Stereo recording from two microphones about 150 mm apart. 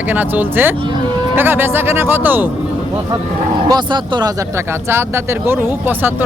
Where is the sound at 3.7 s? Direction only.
30° right (ahead or behind).